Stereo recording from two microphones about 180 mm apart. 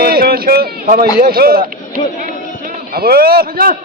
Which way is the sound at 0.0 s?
55° right (ahead or behind).